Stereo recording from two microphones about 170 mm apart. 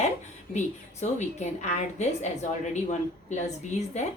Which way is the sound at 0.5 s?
40° left (ahead or behind).